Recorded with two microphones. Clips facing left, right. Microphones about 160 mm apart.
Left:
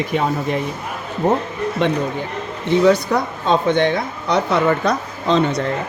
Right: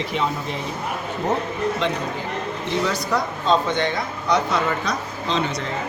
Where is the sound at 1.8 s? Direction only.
55° left (ahead or behind).